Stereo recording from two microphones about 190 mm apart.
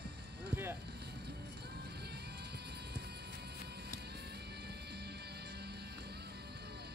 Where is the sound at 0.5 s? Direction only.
10° right (ahead or behind).